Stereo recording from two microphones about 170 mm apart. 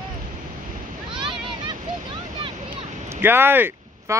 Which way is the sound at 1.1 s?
30° right (ahead or behind).